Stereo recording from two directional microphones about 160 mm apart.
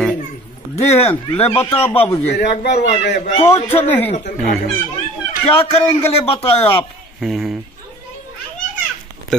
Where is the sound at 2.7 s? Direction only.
45° left (ahead or behind).